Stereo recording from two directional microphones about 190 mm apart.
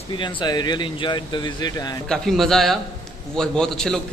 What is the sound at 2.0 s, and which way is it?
Speech, centre (ahead or behind).